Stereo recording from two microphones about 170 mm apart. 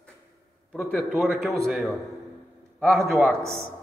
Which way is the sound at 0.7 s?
Centre (ahead or behind).